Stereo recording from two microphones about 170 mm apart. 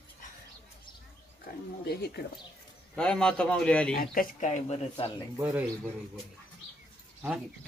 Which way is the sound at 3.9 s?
60° left (ahead or behind).